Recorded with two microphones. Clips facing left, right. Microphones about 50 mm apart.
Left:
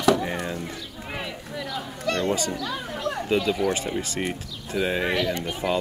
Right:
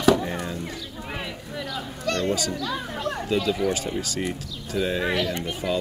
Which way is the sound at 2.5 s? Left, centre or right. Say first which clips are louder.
Right 1 dB; centre.